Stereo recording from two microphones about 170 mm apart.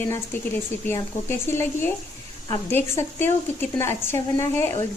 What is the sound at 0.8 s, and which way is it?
A woman's voice, 15° left (ahead or behind).